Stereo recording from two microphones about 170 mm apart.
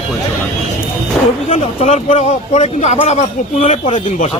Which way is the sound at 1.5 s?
35° left (ahead or behind).